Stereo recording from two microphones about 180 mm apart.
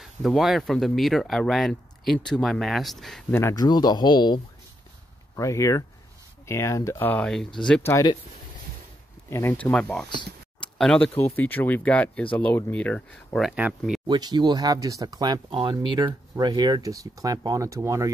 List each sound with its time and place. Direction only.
0.0 s speech: centre (ahead or behind)
3.3 s speech: 15° left (ahead or behind)
7.9 s speech: 20° left (ahead or behind)
9.3 s speech: 15° left (ahead or behind); by 14.0 s 5° right (ahead or behind)
14.0 s speech: 25° right (ahead or behind)